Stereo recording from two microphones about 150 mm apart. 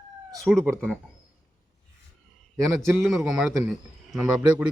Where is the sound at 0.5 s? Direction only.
15° right (ahead or behind).